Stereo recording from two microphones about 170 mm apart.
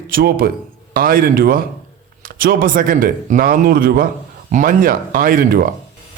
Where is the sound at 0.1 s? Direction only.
60° right (ahead or behind).